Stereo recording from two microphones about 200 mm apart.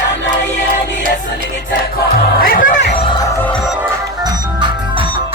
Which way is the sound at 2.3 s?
45° left (ahead or behind).